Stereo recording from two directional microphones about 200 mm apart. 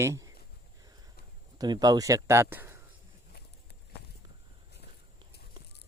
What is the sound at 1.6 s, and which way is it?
Speech, 20° right (ahead or behind).